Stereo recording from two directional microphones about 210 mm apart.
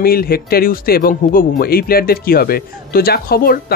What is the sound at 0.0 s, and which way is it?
Speech, 45° left (ahead or behind).